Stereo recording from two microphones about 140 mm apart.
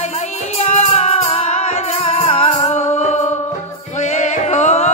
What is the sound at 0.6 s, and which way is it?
Music, 50° left (ahead or behind).